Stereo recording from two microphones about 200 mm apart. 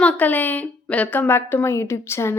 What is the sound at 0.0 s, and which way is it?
A woman's voice, 5° left (ahead or behind).